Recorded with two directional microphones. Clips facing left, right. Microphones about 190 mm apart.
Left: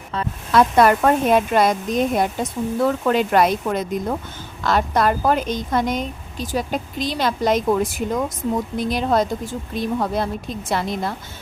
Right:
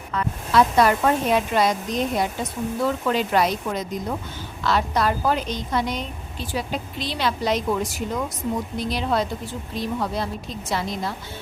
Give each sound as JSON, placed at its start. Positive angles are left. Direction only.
{"t": 0.5, "sound": "a woman's voice", "side_deg": 55}